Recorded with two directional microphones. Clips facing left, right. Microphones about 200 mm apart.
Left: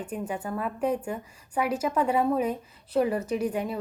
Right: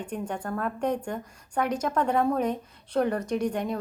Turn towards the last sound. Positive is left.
turn(degrees=5)  # may be behind; listen again after turning